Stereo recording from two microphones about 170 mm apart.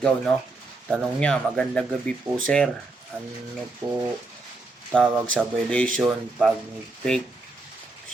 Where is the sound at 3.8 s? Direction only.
20° right (ahead or behind).